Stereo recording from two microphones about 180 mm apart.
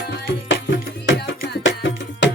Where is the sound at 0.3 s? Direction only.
90° left.